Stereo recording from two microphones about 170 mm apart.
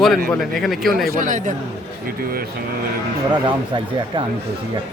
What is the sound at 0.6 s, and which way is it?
Speech, centre (ahead or behind).